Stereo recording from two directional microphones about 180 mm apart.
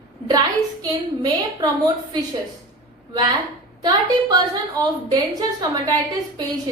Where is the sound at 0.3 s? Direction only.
25° right (ahead or behind).